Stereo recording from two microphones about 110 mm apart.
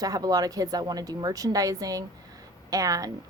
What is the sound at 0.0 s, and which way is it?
A woman's voice, 35° right (ahead or behind).